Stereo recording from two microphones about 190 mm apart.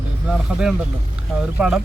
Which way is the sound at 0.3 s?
5° right (ahead or behind).